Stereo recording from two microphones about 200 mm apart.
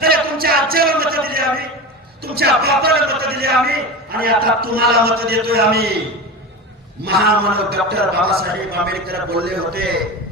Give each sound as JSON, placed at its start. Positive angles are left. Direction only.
{"t": 0.0, "sound": "a sound", "side_deg": -50}
{"t": 2.2, "sound": "a man's voice", "side_deg": -50}
{"t": 7.0, "sound": "a man's voice", "side_deg": -50}